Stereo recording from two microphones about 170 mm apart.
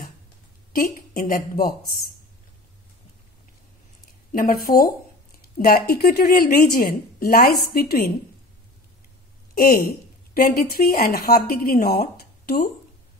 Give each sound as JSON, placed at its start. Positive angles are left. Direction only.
{"t": 0.7, "sound": "a woman's voice", "side_deg": 55}
{"t": 4.3, "sound": "a woman's voice", "side_deg": 55}
{"t": 9.6, "sound": "a woman's voice", "side_deg": 60}